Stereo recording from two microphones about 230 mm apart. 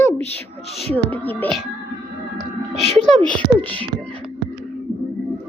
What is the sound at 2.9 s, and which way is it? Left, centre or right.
Speech, centre.